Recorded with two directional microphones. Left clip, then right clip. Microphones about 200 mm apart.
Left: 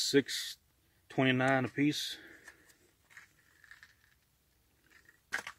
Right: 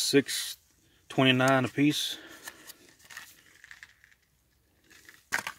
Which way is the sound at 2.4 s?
30° right (ahead or behind).